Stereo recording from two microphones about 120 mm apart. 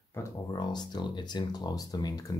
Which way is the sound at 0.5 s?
35° left (ahead or behind).